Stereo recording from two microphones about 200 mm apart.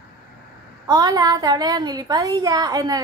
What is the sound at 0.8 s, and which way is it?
A woman's voice, 20° right (ahead or behind).